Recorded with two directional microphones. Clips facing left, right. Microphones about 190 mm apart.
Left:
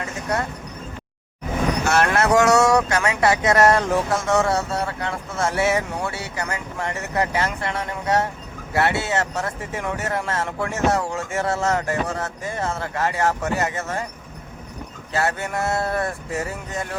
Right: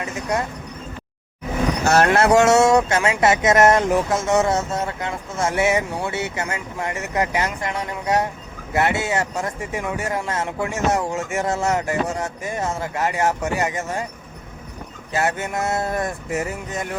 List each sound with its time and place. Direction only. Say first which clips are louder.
0.0 s a sound: right 1 dB; 15° right (ahead or behind)
1.8 s vehicle: right 4 dB; 40° right (ahead or behind)
2.0 s speech: right 2 dB; 30° right (ahead or behind)
15.1 s speech: right 1 dB; 15° right (ahead or behind)